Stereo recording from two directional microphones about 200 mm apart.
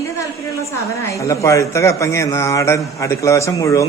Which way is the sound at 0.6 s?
15° left (ahead or behind).